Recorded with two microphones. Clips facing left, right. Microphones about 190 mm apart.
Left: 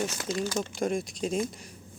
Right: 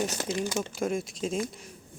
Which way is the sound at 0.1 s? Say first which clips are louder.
Right 1 dB; 25° right (ahead or behind).